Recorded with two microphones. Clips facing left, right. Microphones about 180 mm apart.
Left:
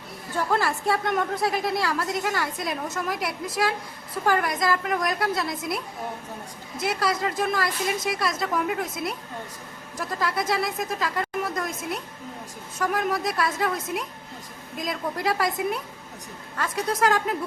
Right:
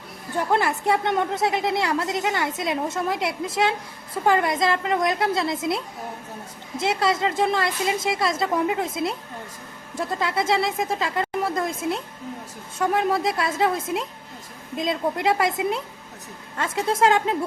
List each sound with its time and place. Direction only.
0.3 s a woman's voice: 20° right (ahead or behind)
10.0 s a woman's voice: 25° right (ahead or behind)